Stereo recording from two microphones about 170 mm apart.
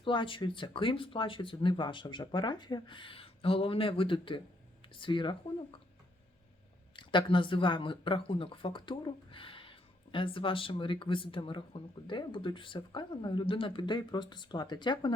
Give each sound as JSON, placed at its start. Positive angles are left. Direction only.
{"t": 0.0, "sound": "speech", "side_deg": 30}
{"t": 6.9, "sound": "speech", "side_deg": 30}